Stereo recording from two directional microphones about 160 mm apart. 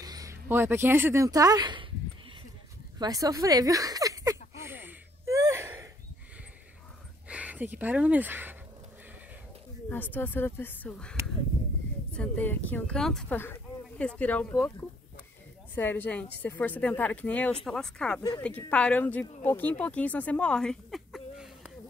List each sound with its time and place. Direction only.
0.0 s speech: 20° right (ahead or behind)
3.0 s a sound: 20° right (ahead or behind)
7.2 s speech: 10° right (ahead or behind)
9.8 s speech: 10° left (ahead or behind)
15.7 s speech: 10° left (ahead or behind); by 21.7 s 5° right (ahead or behind)